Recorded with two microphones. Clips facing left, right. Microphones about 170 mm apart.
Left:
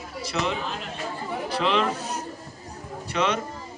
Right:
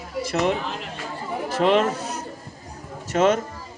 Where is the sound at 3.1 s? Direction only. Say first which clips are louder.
Right 6 dB; 45° right (ahead or behind).